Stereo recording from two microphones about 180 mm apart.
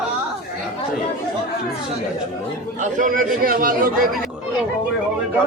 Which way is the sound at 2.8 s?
45° right (ahead or behind).